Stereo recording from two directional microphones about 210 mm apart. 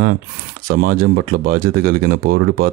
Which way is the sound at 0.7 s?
45° right (ahead or behind).